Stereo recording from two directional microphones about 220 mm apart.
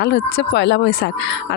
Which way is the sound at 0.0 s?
50° left (ahead or behind).